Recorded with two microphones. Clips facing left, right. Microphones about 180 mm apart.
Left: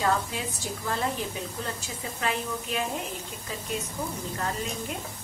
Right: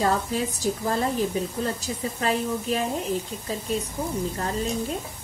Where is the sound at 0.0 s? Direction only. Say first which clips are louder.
Right 4 dB; 40° right (ahead or behind).